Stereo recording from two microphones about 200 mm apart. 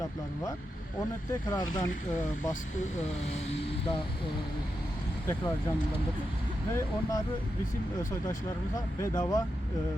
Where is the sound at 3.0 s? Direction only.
35° left (ahead or behind).